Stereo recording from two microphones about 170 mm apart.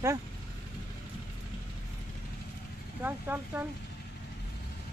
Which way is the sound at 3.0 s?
10° right (ahead or behind).